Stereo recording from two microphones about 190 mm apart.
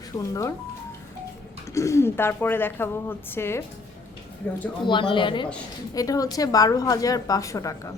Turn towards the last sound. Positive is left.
turn(degrees=15)  # may be behind; listen again after turning